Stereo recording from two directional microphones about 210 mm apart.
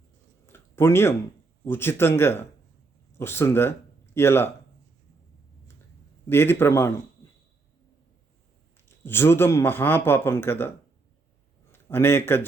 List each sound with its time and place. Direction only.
0.4 s a sound: 10° left (ahead or behind)
1.6 s a man's voice: 10° left (ahead or behind)
6.2 s a man's voice: 10° left (ahead or behind)
9.0 s a man's voice: 10° left (ahead or behind)
11.7 s a man's voice: 10° left (ahead or behind)